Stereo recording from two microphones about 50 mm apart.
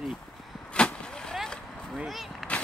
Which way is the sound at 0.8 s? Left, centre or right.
Left.